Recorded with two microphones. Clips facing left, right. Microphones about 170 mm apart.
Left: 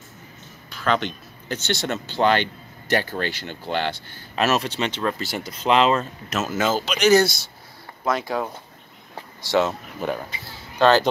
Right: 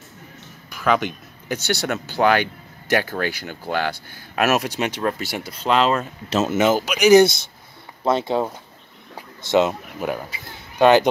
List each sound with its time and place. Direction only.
0.7 s speech: 10° right (ahead or behind)
5.6 s speech: centre (ahead or behind)
6.3 s speech: 25° right (ahead or behind)